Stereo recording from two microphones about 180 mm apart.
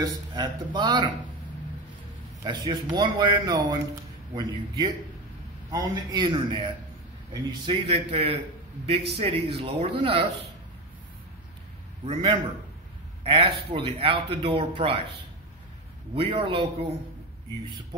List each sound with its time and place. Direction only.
0.0 s a man's voice: 20° right (ahead or behind)
2.4 s a man's voice: 25° right (ahead or behind)
12.1 s a man's voice: 30° right (ahead or behind)
16.2 s a man's voice: 30° right (ahead or behind)